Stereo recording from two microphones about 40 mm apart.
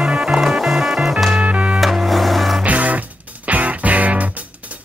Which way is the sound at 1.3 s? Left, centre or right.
Right.